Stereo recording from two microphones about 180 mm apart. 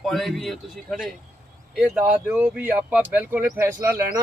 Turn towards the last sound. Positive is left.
turn(degrees=-15)  # may be behind; listen again after turning